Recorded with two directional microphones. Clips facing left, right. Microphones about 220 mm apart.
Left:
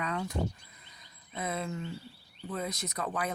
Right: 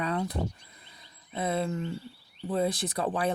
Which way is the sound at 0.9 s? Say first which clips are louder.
Right 5 dB; 30° right (ahead or behind).